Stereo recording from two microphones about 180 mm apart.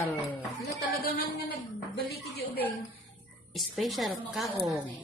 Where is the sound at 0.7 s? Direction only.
55° left (ahead or behind).